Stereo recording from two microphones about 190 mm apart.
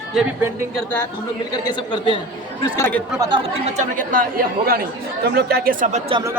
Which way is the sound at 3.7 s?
40° right (ahead or behind).